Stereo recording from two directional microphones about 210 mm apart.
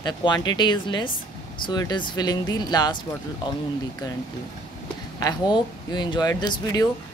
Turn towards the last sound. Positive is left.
turn(degrees=20)  # may be behind; listen again after turning